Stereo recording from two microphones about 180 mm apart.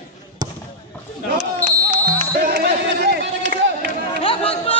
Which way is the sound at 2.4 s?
60° right (ahead or behind).